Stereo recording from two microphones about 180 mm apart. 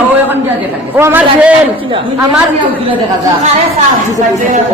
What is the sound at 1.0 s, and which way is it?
Speech, 10° right (ahead or behind).